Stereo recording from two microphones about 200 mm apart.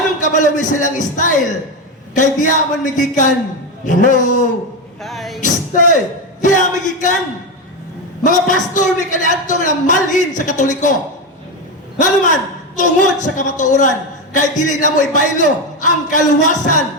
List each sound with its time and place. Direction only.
0.2 s a man's voice: 40° left (ahead or behind)
5.0 s music: centre (ahead or behind)
5.4 s a sound: 40° left (ahead or behind)
6.4 s speech: 40° left (ahead or behind)
8.2 s a man's voice: 40° left (ahead or behind)
11.9 s a man's voice: 40° left (ahead or behind)